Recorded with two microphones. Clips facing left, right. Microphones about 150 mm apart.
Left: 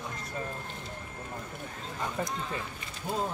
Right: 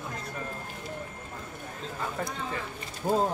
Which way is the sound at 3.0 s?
50° right (ahead or behind).